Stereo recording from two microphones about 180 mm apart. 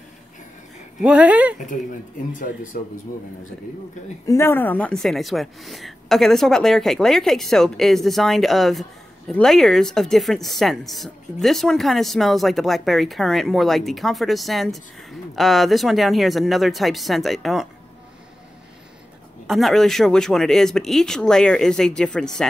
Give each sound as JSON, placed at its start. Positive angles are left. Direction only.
{"t": 1.0, "sound": "speech", "side_deg": -5}
{"t": 2.3, "sound": "speech", "side_deg": 50}
{"t": 4.3, "sound": "speech", "side_deg": 15}
{"t": 19.4, "sound": "speech", "side_deg": 0}